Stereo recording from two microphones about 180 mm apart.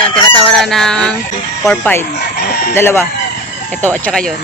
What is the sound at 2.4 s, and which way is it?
Chicken, 60° left (ahead or behind).